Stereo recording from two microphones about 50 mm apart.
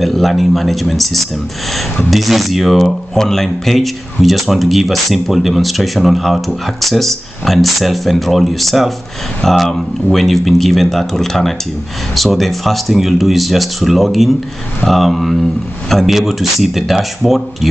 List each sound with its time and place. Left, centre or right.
0.0 s speech: centre